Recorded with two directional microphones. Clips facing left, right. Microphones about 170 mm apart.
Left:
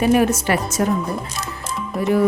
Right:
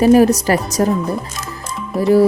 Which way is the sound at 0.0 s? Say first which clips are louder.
Right 6 dB; 35° right (ahead or behind).